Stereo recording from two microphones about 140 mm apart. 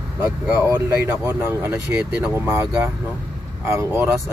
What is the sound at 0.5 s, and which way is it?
Speech, 15° right (ahead or behind).